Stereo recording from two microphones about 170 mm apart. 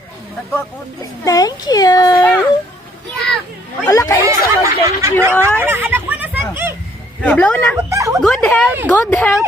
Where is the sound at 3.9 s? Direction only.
20° left (ahead or behind).